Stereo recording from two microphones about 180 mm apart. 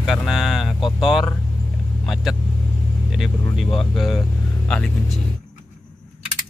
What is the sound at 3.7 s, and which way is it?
Speech, centre (ahead or behind).